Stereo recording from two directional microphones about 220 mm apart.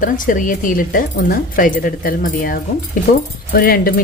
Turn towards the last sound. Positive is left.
turn(degrees=40)  # may be behind; listen again after turning